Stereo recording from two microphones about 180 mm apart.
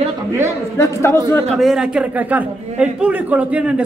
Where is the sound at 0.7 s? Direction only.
15° left (ahead or behind).